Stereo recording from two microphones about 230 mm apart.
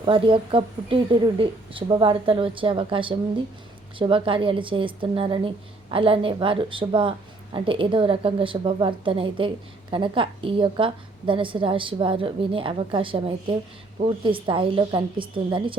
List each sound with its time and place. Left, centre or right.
0.0 s a woman's voice: right